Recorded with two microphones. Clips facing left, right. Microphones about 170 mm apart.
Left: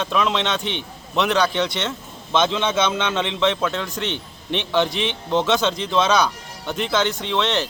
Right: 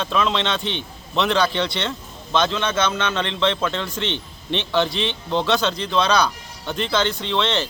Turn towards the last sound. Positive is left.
turn(degrees=10)  # may be behind; listen again after turning